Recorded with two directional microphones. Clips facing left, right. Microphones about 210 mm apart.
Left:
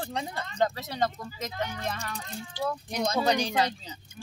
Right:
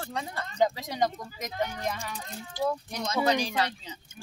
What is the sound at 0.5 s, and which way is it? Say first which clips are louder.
Speech: right 2 dB; 10° right (ahead or behind).